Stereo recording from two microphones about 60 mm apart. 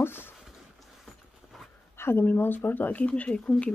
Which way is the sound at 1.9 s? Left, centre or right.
Left.